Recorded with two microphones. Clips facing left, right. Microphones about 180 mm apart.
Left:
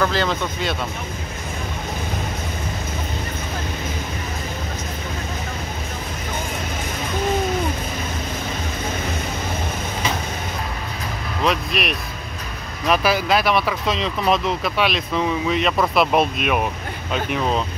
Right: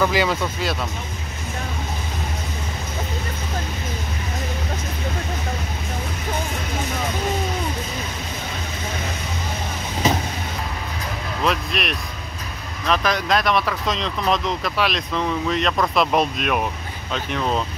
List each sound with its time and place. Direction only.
0.0 s speech: 10° right (ahead or behind)
10.0 s vehicle: 40° right (ahead or behind)
11.4 s speech: centre (ahead or behind)